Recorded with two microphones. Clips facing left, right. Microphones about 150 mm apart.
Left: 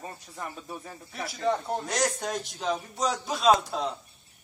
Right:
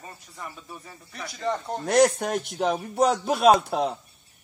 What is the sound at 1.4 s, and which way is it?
Speech, centre (ahead or behind).